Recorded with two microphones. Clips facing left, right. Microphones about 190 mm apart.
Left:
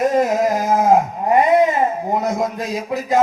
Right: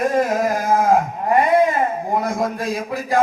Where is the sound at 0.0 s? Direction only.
20° left (ahead or behind).